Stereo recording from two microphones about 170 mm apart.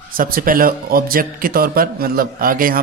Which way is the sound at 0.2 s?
55° right (ahead or behind).